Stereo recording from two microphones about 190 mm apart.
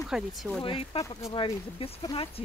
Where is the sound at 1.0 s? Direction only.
15° left (ahead or behind).